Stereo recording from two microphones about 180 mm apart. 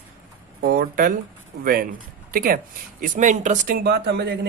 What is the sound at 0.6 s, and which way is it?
Speech, 55° right (ahead or behind).